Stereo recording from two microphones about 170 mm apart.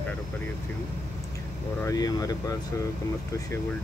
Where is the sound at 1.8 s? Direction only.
20° left (ahead or behind).